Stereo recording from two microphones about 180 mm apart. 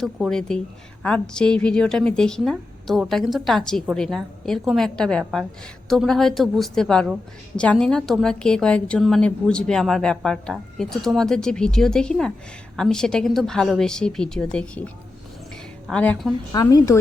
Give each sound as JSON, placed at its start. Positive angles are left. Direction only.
{"t": 0.0, "sound": "a woman's voice", "side_deg": 0}
{"t": 15.9, "sound": "a woman's voice", "side_deg": 5}
{"t": 16.5, "sound": "speech", "side_deg": 20}